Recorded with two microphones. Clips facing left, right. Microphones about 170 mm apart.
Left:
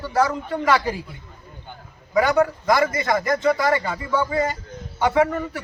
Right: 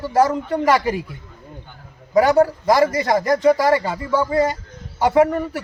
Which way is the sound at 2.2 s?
35° right (ahead or behind).